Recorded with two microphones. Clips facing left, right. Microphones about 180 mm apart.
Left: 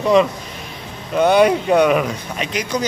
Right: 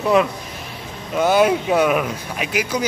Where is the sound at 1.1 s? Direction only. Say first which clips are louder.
Left 2 dB; 5° right (ahead or behind).